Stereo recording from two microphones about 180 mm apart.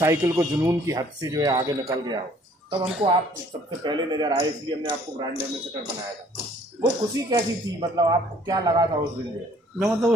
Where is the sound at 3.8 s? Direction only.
25° right (ahead or behind).